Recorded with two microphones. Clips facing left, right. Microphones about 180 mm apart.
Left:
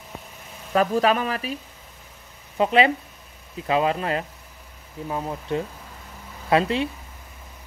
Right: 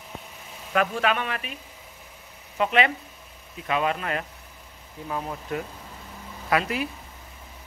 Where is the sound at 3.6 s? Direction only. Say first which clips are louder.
Left 4 dB; 30° left (ahead or behind).